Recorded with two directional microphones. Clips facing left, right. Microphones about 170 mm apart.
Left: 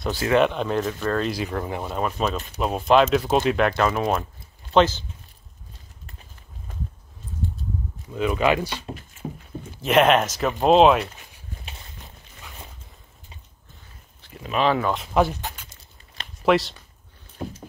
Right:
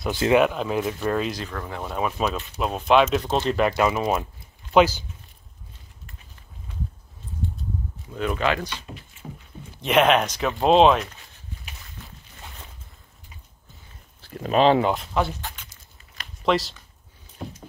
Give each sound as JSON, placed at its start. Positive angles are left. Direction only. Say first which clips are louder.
{"t": 0.1, "sound": "speech", "louder": "right 2 dB", "side_deg": -20}
{"t": 0.4, "sound": "speech", "louder": "left 1 dB", "side_deg": -5}
{"t": 1.2, "sound": "speech", "louder": "left 3 dB", "side_deg": 5}
{"t": 1.5, "sound": "speech", "louder": "left 5 dB", "side_deg": 25}
{"t": 2.0, "sound": "speech", "louder": "right 1 dB", "side_deg": -5}
{"t": 6.7, "sound": "a sound", "louder": "right 1 dB", "side_deg": 45}
{"t": 8.1, "sound": "speech", "louder": "left 3 dB", "side_deg": 5}
{"t": 8.9, "sound": "speech", "louder": "left 6 dB", "side_deg": 40}
{"t": 9.8, "sound": "speech", "louder": "left 1 dB", "side_deg": 0}
{"t": 12.0, "sound": "a sound", "louder": "right 2 dB", "side_deg": 15}
{"t": 14.2, "sound": "speech", "louder": "right 5 dB", "side_deg": -40}
{"t": 14.6, "sound": "speech", "louder": "right 4 dB", "side_deg": -30}
{"t": 15.1, "sound": "speech", "louder": "left 4 dB", "side_deg": 15}
{"t": 16.4, "sound": "speech", "louder": "left 3 dB", "side_deg": 0}